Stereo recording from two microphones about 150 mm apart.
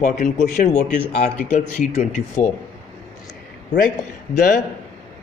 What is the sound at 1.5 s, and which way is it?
Speech, 50° left (ahead or behind).